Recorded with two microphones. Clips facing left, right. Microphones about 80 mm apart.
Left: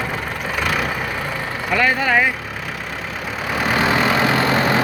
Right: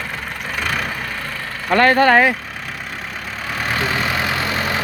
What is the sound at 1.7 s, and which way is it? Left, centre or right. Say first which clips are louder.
Speech: right 6 dB; right.